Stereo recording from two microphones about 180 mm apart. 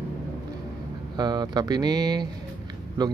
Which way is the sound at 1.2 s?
25° right (ahead or behind).